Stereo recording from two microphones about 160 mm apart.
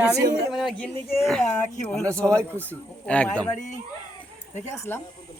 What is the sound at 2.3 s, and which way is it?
Speech, 15° right (ahead or behind).